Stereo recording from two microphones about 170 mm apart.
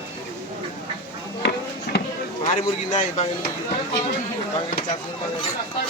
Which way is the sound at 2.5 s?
40° left (ahead or behind).